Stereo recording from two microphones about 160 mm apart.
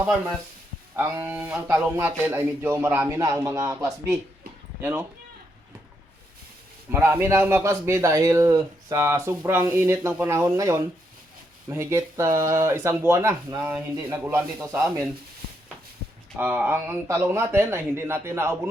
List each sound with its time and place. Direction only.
0.9 s a man's voice: 15° right (ahead or behind)
6.9 s a man's voice: 15° right (ahead or behind)
16.4 s a man's voice: 10° right (ahead or behind)